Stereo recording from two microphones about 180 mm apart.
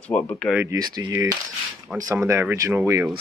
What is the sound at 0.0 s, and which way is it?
Speech, 5° left (ahead or behind).